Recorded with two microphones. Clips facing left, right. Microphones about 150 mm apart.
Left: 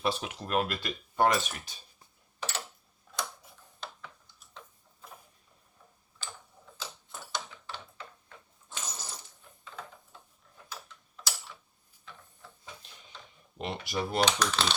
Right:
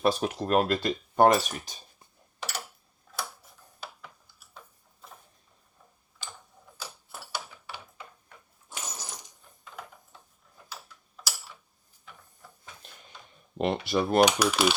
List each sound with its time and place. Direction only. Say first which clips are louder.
0.0 s speech: right 6 dB; 40° right (ahead or behind)
2.4 s a sound: even; 10° right (ahead or behind)
6.1 s a sound: even; 15° right (ahead or behind)
10.7 s tick-tock: even; 10° right (ahead or behind)
13.6 s speech: right 7 dB; 60° right (ahead or behind)
14.3 s speech: right 5 dB; 10° right (ahead or behind)